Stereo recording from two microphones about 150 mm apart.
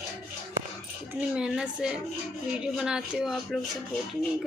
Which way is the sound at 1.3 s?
5° right (ahead or behind).